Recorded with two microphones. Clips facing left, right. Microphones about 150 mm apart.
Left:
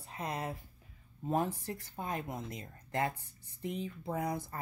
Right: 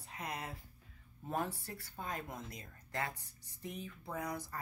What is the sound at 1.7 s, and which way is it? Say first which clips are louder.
A woman's voice: left 5 dB; 20° left (ahead or behind).